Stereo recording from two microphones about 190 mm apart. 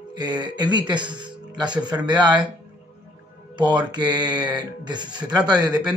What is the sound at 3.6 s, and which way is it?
Speech, 25° right (ahead or behind).